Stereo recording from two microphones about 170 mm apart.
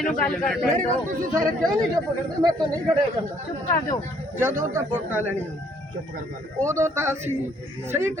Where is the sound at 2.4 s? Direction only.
25° right (ahead or behind).